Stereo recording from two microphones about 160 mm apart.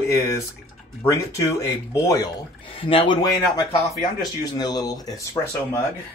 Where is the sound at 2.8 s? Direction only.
35° left (ahead or behind).